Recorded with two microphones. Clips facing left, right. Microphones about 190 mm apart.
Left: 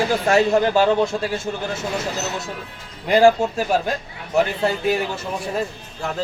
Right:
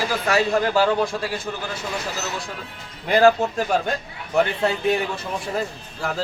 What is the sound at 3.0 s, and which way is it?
A man's voice, 15° left (ahead or behind).